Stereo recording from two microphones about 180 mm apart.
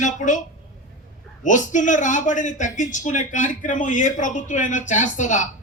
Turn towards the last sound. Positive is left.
turn(degrees=45)  # may be behind; listen again after turning